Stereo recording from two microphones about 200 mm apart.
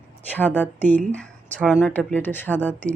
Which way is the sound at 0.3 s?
10° left (ahead or behind).